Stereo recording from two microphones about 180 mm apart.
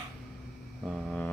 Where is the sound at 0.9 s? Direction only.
Centre (ahead or behind).